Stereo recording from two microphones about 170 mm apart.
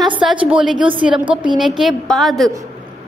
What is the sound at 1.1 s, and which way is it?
Speech, 30° right (ahead or behind).